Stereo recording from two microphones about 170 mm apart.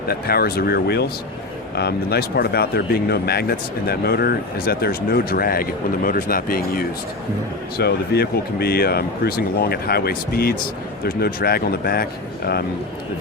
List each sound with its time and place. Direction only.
0.1 s speech: 65° left (ahead or behind)
7.8 s speech: 70° left (ahead or behind)